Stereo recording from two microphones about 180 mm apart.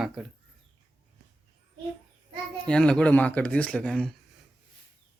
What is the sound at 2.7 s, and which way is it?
Speech, 5° left (ahead or behind).